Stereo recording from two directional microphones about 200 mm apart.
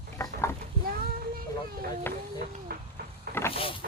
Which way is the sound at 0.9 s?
45° right (ahead or behind).